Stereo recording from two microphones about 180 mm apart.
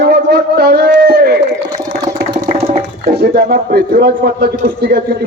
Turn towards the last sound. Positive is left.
turn(degrees=-60)  # may be behind; listen again after turning